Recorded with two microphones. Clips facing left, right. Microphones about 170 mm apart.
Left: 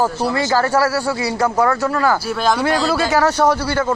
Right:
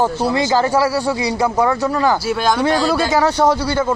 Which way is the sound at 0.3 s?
15° right (ahead or behind).